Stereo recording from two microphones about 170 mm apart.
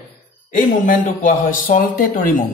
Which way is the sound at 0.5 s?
50° left (ahead or behind).